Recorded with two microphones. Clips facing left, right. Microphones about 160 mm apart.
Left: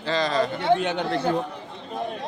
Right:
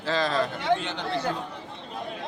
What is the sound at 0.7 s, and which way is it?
Speech, 55° left (ahead or behind).